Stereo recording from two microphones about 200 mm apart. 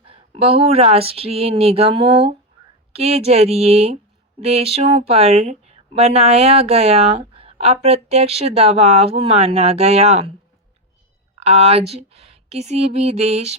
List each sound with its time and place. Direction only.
0.0 s speech: 30° right (ahead or behind)
11.3 s speech: 30° right (ahead or behind)